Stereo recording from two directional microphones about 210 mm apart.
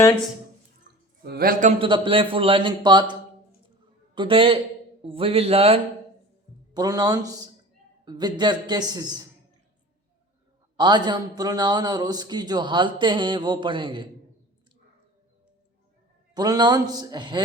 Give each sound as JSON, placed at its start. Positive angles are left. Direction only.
{"t": 1.2, "sound": "a man's voice", "side_deg": -45}
{"t": 1.8, "sound": "a man's voice", "side_deg": -25}
{"t": 10.8, "sound": "a man's voice", "side_deg": -20}
{"t": 16.3, "sound": "a man's voice", "side_deg": -20}